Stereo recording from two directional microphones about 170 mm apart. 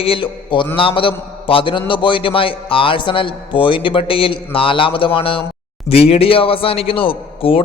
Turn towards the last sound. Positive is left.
turn(degrees=30)  # may be behind; listen again after turning